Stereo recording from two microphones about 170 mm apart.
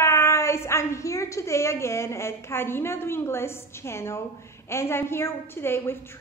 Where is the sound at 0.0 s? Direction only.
15° left (ahead or behind).